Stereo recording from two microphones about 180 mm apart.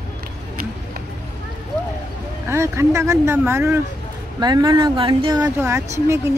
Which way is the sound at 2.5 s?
15° right (ahead or behind).